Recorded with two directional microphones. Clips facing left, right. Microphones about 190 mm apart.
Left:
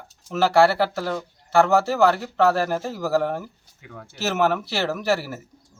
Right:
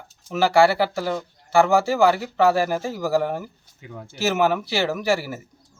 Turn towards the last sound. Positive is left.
turn(degrees=0)  # may be behind; listen again after turning